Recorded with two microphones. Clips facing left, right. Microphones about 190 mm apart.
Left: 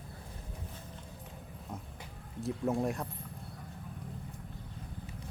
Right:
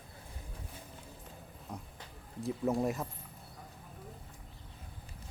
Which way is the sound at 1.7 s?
Centre (ahead or behind).